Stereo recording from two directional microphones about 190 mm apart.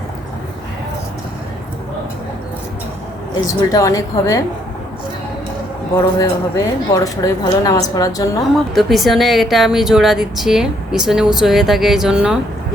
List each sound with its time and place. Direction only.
3.6 s a woman's voice: 20° left (ahead or behind)
6.1 s a woman's voice: 20° left (ahead or behind)
8.5 s speech: centre (ahead or behind)